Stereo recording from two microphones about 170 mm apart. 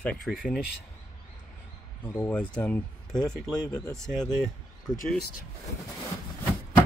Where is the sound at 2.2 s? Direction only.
5° left (ahead or behind).